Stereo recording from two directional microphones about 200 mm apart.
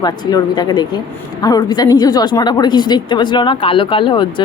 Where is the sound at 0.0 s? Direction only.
20° left (ahead or behind).